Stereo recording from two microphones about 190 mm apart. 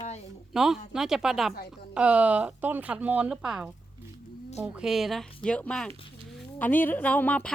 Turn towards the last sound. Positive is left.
turn(degrees=10)  # may be behind; listen again after turning